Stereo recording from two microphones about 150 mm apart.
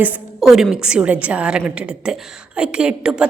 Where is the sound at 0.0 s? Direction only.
5° right (ahead or behind).